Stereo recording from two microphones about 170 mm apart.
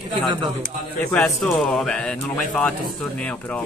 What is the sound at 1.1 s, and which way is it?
Speech, 5° left (ahead or behind).